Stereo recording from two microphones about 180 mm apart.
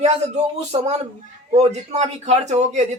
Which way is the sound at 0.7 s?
35° right (ahead or behind).